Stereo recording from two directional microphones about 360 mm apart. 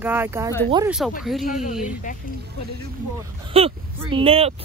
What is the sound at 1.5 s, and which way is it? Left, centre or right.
Speech, left.